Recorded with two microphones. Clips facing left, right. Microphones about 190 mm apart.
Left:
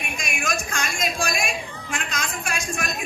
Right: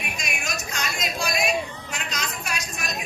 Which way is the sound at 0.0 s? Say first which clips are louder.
Left 3 dB; 50° left (ahead or behind).